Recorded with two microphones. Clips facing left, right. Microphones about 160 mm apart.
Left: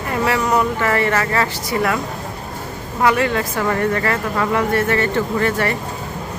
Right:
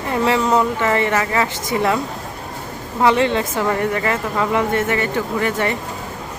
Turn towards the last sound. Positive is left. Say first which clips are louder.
# left 1 dB
turn(degrees=-15)  # may be behind; listen again after turning